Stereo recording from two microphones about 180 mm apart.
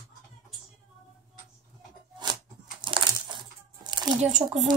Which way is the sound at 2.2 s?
25° right (ahead or behind).